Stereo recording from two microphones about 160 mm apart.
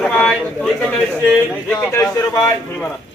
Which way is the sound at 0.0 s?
5° left (ahead or behind).